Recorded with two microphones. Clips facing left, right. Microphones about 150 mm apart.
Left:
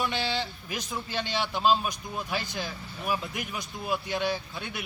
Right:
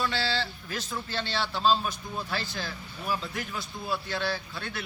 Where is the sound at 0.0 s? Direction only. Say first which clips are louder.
Even; 20° left (ahead or behind).